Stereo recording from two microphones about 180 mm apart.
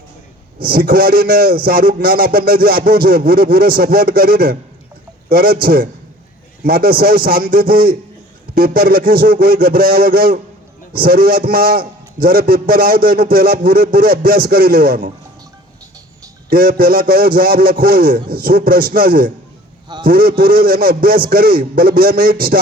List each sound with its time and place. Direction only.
0.6 s a man's voice: 55° right (ahead or behind)
16.5 s speech: 55° right (ahead or behind)